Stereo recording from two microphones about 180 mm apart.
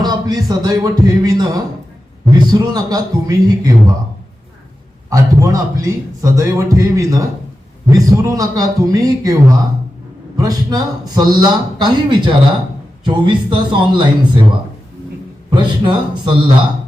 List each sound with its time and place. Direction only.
0.0 s a man's voice: 25° right (ahead or behind)
5.0 s a man's voice: 20° right (ahead or behind)
10.3 s a man's voice: 20° right (ahead or behind)
15.4 s a man's voice: 25° right (ahead or behind)